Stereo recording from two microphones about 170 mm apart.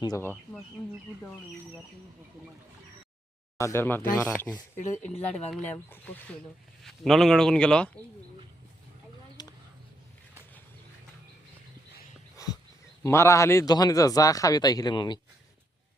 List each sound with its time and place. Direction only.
0.0 s speech: 20° left (ahead or behind)
3.6 s speech: 15° left (ahead or behind)
4.8 s speech: 40° left (ahead or behind)
5.5 s a man's voice: 5° left (ahead or behind)
6.8 s a man's voice: centre (ahead or behind)
9.4 s a sound: 25° left (ahead or behind)
12.4 s wild animals: 20° left (ahead or behind)
13.0 s a man's voice: 15° left (ahead or behind)